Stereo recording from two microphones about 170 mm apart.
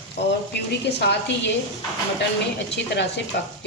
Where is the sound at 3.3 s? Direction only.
70° left (ahead or behind).